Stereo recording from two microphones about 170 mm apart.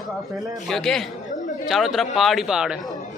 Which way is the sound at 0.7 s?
Centre (ahead or behind).